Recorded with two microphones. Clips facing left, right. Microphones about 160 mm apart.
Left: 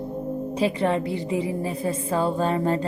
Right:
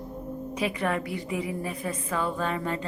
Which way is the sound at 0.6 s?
30° left (ahead or behind).